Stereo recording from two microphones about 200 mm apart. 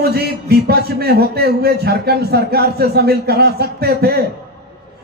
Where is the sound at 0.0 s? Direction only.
55° right (ahead or behind).